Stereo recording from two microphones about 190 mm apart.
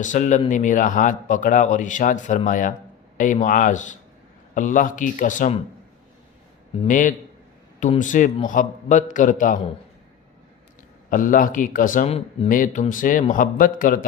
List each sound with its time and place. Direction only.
0.0 s a man's voice: 40° left (ahead or behind)
6.8 s a man's voice: 45° left (ahead or behind)
11.1 s a man's voice: 45° left (ahead or behind)
12.5 s a man's voice: 45° left (ahead or behind)